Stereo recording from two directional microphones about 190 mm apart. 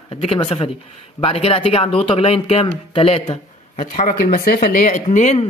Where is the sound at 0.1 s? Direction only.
30° left (ahead or behind).